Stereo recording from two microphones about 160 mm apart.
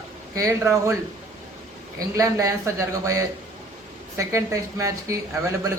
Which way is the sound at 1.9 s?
20° right (ahead or behind).